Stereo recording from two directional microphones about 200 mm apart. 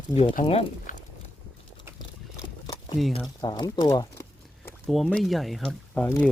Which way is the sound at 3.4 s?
20° left (ahead or behind).